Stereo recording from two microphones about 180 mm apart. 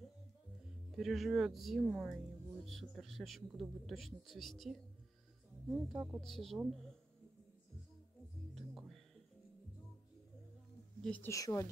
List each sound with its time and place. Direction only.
0.9 s speech: centre (ahead or behind)
8.5 s music: centre (ahead or behind)
11.0 s a woman's voice: 10° left (ahead or behind)